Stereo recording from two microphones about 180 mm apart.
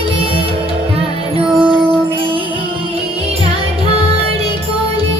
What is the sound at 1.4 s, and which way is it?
Music, 30° right (ahead or behind).